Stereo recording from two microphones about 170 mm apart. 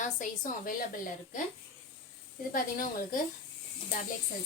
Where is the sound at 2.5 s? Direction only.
55° left (ahead or behind).